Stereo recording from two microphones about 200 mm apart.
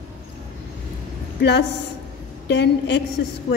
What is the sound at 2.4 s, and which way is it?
Speech, 60° left (ahead or behind).